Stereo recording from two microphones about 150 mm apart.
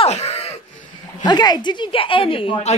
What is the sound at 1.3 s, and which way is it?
A woman's voice, 30° left (ahead or behind).